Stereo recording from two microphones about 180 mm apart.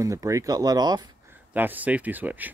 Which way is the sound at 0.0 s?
15° right (ahead or behind).